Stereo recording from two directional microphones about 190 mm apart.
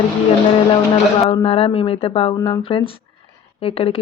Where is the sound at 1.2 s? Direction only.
30° left (ahead or behind).